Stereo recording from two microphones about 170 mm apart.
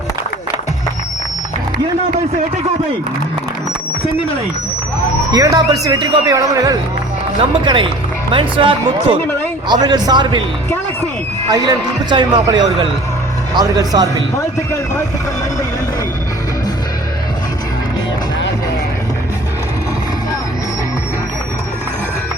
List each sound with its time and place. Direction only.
5.3 s speech: 20° right (ahead or behind)
11.5 s speech: 25° right (ahead or behind)